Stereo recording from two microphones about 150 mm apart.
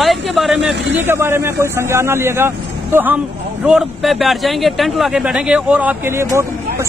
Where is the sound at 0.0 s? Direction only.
Centre (ahead or behind).